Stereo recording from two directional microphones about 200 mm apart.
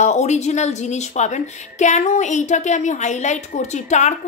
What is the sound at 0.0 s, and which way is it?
A woman's voice, 35° left (ahead or behind).